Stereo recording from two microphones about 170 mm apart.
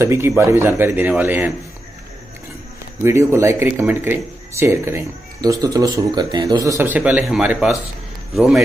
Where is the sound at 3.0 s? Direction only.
15° right (ahead or behind).